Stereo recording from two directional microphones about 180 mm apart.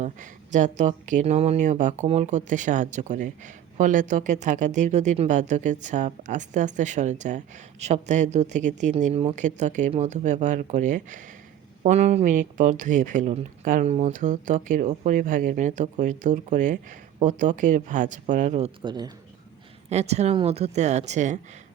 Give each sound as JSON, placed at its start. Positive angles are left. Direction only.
{"t": 0.0, "sound": "speech", "side_deg": -45}
{"t": 19.9, "sound": "speech", "side_deg": -35}